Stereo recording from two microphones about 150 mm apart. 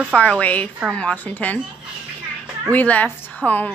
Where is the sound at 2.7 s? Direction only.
10° left (ahead or behind).